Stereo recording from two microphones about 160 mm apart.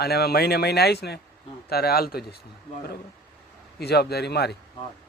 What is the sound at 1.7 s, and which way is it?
Speech, 75° left (ahead or behind).